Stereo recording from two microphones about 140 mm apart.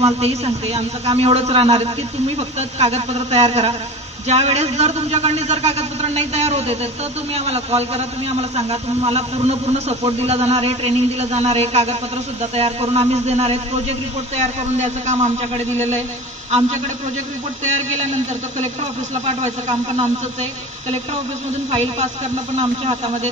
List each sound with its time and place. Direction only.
0.0 s a man's voice: 50° right (ahead or behind)
19.2 s a man's voice: 55° right (ahead or behind)
21.6 s a man's voice: 45° right (ahead or behind)